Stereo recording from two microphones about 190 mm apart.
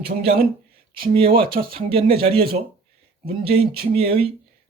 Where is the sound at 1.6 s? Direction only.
50° right (ahead or behind).